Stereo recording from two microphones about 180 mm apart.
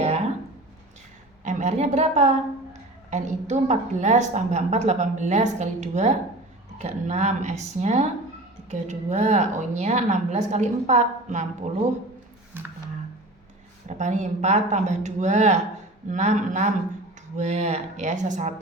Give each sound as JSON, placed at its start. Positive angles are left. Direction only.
{"t": 1.5, "sound": "a woman's voice", "side_deg": -40}
{"t": 13.8, "sound": "a woman's voice", "side_deg": -40}